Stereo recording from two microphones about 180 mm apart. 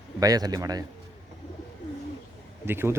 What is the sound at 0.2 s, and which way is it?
Speech, 20° right (ahead or behind).